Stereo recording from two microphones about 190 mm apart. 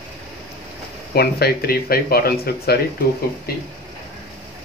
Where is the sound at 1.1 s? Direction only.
55° left (ahead or behind).